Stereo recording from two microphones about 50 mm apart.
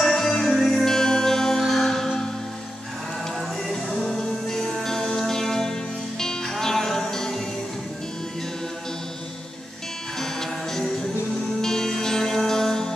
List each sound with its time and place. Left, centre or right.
0.0 s music: centre
3.7 s music: centre
10.1 s music: centre